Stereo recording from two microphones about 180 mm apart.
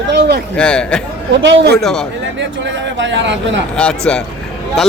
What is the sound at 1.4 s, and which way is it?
Speech, 90° right.